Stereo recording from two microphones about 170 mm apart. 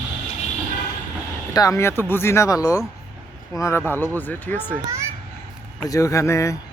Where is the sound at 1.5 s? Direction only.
20° left (ahead or behind).